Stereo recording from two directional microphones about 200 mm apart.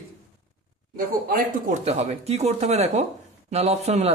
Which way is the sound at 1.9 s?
30° right (ahead or behind).